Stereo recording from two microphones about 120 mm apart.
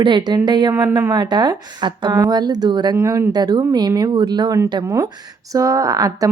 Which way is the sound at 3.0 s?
25° right (ahead or behind).